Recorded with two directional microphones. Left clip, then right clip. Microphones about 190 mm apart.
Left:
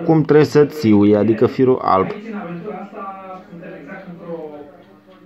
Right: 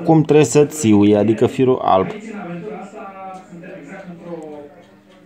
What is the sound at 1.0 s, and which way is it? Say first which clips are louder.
Speech: even; 25° right (ahead or behind).